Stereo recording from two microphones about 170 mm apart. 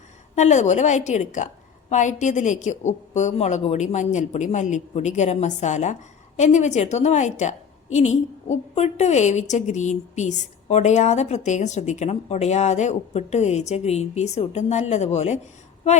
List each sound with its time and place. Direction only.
0.3 s a woman's voice: 45° left (ahead or behind)